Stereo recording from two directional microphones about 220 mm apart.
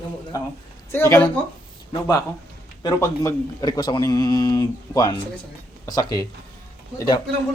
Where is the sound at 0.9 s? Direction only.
10° left (ahead or behind).